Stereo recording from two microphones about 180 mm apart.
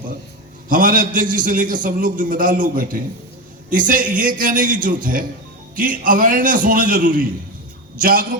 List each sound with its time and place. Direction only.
0.7 s a man's voice: 50° right (ahead or behind)